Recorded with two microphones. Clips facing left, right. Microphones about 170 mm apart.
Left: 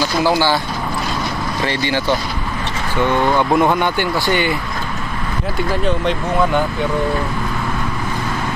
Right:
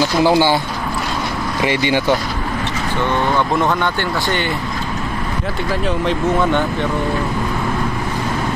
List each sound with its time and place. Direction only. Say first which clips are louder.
0.2 s speech: right 2 dB; 20° right (ahead or behind)
1.6 s speech: right 4 dB; 15° right (ahead or behind)
3.0 s speech: left 3 dB; 10° left (ahead or behind)